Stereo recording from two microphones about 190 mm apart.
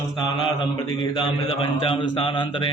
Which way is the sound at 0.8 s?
25° left (ahead or behind).